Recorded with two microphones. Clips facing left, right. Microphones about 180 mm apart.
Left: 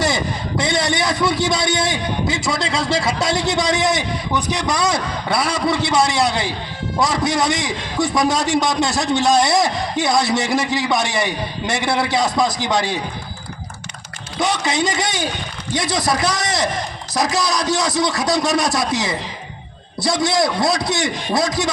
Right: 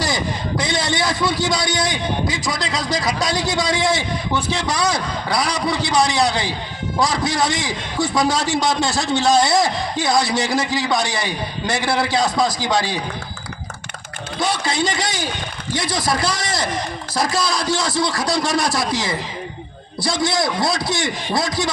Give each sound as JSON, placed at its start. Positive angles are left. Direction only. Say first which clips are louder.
{"t": 0.0, "sound": "a man's voice", "louder": "left 2 dB", "side_deg": 25}
{"t": 14.4, "sound": "a man's voice", "louder": "left 2 dB", "side_deg": 20}